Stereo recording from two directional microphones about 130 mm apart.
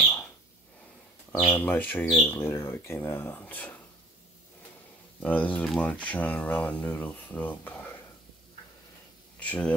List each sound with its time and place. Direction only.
0.0 s a sound: 5° left (ahead or behind)
1.3 s speech: 15° left (ahead or behind)
5.2 s speech: 10° left (ahead or behind)
9.4 s speech: 10° left (ahead or behind)